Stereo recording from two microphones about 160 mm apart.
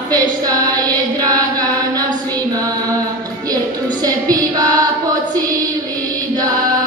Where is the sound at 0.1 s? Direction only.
25° right (ahead or behind).